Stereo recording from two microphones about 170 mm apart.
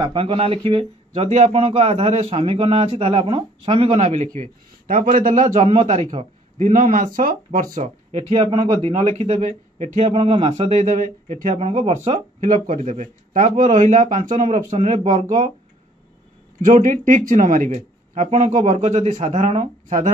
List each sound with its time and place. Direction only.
0.0 s speech: 30° right (ahead or behind); by 5.6 s 50° right (ahead or behind)
5.6 s speech: 35° right (ahead or behind); by 7.9 s 50° right (ahead or behind)
8.1 s speech: 30° right (ahead or behind)
16.6 s speech: 50° right (ahead or behind)